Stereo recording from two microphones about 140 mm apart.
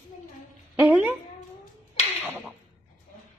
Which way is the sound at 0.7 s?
10° right (ahead or behind).